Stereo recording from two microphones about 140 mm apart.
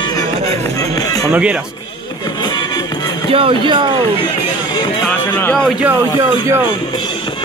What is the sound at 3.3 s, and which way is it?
Speech, 40° right (ahead or behind).